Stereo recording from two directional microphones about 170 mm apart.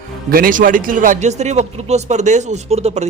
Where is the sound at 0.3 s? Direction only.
55° right (ahead or behind).